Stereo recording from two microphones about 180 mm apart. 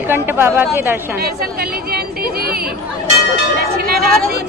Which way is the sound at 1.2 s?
55° right (ahead or behind).